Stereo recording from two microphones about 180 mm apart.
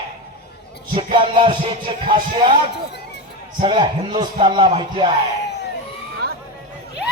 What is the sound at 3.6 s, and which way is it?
A man's voice, 25° right (ahead or behind).